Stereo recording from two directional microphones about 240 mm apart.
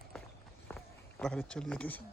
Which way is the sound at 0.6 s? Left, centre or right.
Centre.